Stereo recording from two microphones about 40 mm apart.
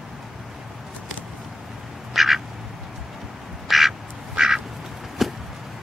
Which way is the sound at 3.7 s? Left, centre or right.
Centre.